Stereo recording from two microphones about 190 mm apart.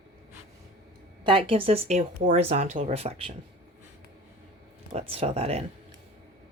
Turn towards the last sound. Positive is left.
turn(degrees=-35)  # may be behind; listen again after turning